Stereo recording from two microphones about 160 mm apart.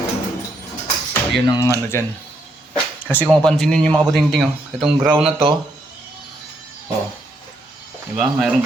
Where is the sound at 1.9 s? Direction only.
15° left (ahead or behind).